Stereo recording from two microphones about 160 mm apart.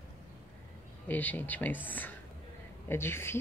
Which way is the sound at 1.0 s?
10° left (ahead or behind).